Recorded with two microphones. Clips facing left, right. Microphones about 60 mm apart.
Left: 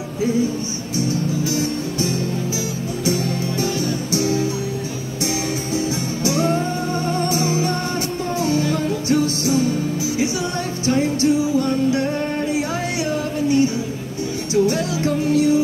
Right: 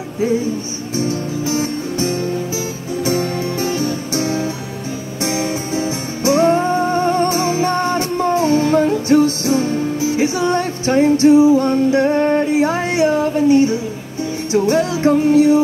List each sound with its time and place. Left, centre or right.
0.9 s music: right